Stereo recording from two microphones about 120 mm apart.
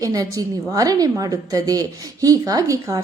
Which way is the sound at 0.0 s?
30° right (ahead or behind).